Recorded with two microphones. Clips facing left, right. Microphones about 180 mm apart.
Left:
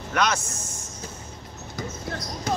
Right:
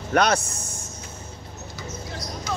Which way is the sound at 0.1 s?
35° right (ahead or behind).